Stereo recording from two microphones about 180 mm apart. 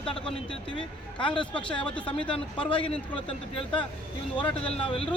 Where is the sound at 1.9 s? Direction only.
5° left (ahead or behind).